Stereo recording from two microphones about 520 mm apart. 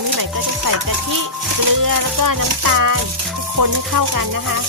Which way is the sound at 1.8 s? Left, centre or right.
Right.